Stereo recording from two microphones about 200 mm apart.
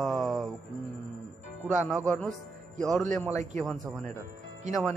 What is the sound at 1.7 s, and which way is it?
A man's voice, 5° right (ahead or behind).